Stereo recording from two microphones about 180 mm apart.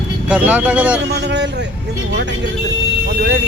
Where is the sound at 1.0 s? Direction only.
70° right (ahead or behind).